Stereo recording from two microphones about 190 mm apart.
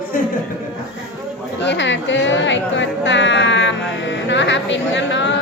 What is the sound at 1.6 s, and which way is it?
Music, 70° left (ahead or behind).